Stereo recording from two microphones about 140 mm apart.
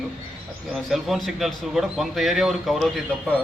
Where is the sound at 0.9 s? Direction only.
Centre (ahead or behind).